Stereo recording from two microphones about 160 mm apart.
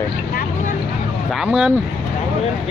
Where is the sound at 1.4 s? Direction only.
5° right (ahead or behind).